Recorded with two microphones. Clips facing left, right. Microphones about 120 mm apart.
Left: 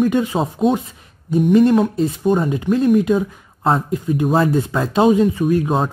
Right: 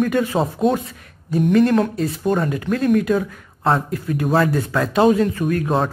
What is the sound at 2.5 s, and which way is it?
Speech, 20° left (ahead or behind).